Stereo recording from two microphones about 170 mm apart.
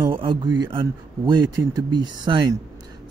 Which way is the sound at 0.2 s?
25° right (ahead or behind).